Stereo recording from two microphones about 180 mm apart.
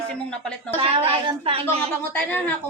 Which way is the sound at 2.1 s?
10° left (ahead or behind).